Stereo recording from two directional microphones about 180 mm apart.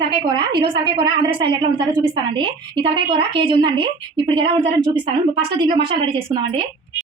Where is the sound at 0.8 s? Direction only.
25° right (ahead or behind).